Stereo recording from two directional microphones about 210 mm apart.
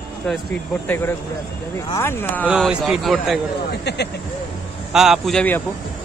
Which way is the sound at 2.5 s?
5° right (ahead or behind).